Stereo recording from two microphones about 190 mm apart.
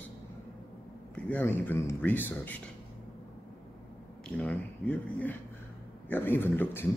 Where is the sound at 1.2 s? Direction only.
10° left (ahead or behind).